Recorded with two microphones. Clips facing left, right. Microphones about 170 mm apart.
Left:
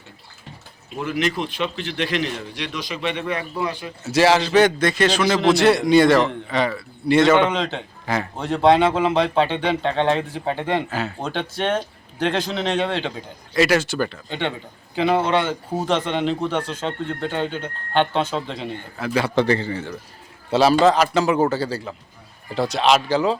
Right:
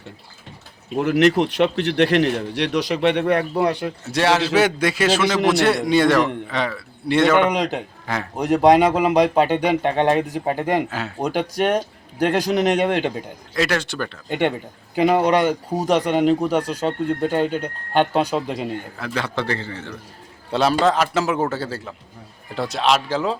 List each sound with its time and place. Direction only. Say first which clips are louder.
0.9 s a man's voice: right 7 dB; 65° right (ahead or behind)
4.0 s a man's voice: left 3 dB; centre (ahead or behind)
7.5 s speech: right 2 dB; 15° right (ahead or behind)
8.0 s speech: left 6 dB; centre (ahead or behind)
8.4 s speech: right 2 dB; 15° right (ahead or behind)
10.3 s speech: right 2 dB; 40° right (ahead or behind)
10.8 s a man's voice: right 1 dB; centre (ahead or behind)
11.2 s speech: right 9 dB; 15° right (ahead or behind)
13.5 s a man's voice: left 4 dB; 5° left (ahead or behind)
15.0 s speech: right 3 dB; 15° right (ahead or behind)
18.6 s a man's voice: right 1 dB; centre (ahead or behind)
20.5 s a man's voice: left 3 dB; centre (ahead or behind)